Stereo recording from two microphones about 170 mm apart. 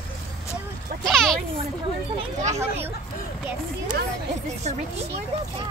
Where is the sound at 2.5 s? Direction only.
15° right (ahead or behind).